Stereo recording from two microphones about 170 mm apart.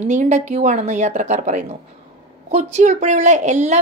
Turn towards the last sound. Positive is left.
turn(degrees=-45)  # may be behind; listen again after turning